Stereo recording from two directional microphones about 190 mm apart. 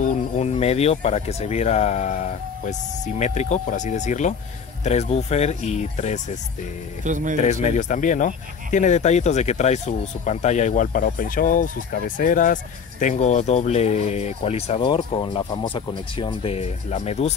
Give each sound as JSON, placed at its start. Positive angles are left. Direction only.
{"t": 0.4, "sound": "speech", "side_deg": 35}
{"t": 3.2, "sound": "speech", "side_deg": 35}
{"t": 7.1, "sound": "speech", "side_deg": -40}
{"t": 7.4, "sound": "speech", "side_deg": 35}